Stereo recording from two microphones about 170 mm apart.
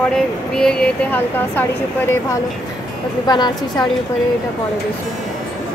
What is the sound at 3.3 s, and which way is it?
Speech, 25° left (ahead or behind).